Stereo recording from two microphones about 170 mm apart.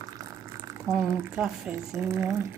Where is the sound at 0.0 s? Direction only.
20° right (ahead or behind).